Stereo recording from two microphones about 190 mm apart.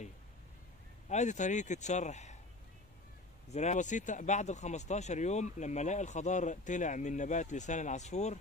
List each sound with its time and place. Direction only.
1.0 s speech: 40° left (ahead or behind)
3.4 s speech: 35° left (ahead or behind)